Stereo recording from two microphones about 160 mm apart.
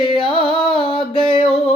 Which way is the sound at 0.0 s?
30° left (ahead or behind).